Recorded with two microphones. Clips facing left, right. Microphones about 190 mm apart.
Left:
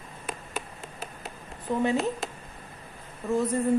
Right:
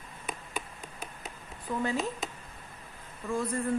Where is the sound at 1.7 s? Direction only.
20° left (ahead or behind).